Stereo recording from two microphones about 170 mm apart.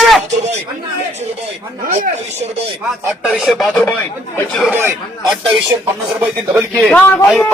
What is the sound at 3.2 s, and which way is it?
Speech, 5° right (ahead or behind).